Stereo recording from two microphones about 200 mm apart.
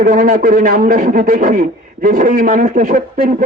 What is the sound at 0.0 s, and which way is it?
A man's voice, 40° right (ahead or behind).